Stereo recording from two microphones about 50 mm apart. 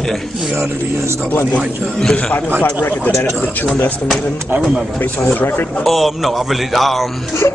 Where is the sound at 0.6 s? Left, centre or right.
Right.